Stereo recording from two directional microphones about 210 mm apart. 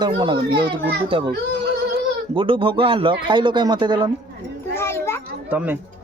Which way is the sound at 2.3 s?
25° right (ahead or behind).